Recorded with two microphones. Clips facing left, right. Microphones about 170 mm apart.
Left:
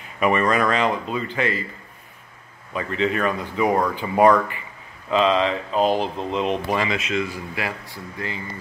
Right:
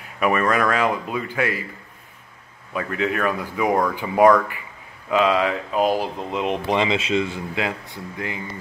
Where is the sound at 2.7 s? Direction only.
5° right (ahead or behind).